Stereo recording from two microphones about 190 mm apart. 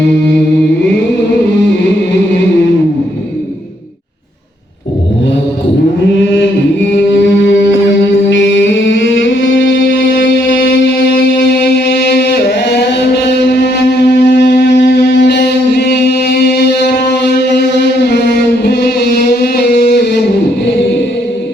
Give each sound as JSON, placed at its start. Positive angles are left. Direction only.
{"t": 6.9, "sound": "music", "side_deg": 70}
{"t": 11.6, "sound": "a sound", "side_deg": 60}
{"t": 17.6, "sound": "music", "side_deg": 60}